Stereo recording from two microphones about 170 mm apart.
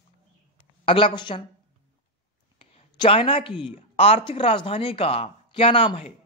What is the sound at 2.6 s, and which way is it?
Speech, 35° left (ahead or behind).